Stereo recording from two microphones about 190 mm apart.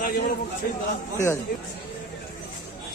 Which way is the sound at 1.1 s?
15° left (ahead or behind).